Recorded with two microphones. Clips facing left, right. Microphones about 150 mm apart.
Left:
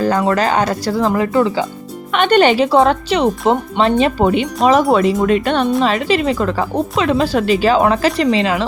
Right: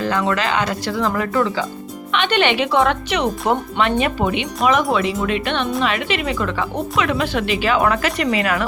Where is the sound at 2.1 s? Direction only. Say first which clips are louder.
Left 6 dB; 45° left (ahead or behind).